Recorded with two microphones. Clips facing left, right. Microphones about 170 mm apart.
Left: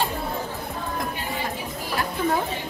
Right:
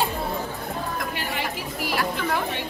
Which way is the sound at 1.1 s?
75° right (ahead or behind).